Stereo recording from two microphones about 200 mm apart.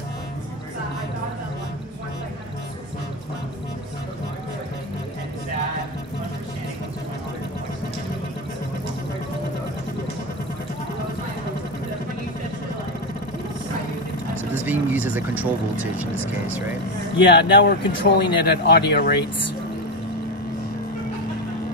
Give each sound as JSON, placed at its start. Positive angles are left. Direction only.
{"t": 14.5, "sound": "vehicle", "side_deg": -10}
{"t": 15.0, "sound": "speech", "side_deg": -10}
{"t": 17.3, "sound": "speech", "side_deg": 55}